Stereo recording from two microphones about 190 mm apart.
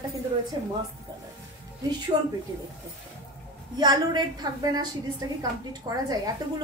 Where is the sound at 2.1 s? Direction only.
25° right (ahead or behind).